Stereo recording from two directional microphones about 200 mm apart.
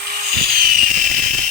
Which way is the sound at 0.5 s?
45° right (ahead or behind).